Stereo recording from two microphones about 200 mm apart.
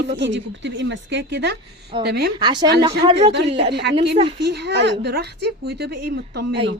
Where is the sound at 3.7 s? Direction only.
55° right (ahead or behind).